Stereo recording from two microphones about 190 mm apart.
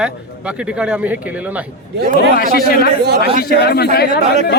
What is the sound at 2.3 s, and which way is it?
A man's voice, 55° left (ahead or behind).